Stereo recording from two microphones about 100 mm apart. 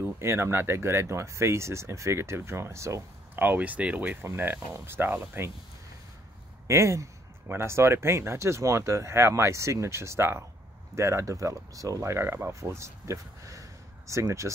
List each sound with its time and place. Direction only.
0.0 s speech: 25° right (ahead or behind)
6.7 s speech: 30° right (ahead or behind)